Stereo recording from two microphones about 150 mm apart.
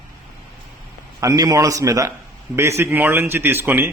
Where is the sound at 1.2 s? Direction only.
20° right (ahead or behind).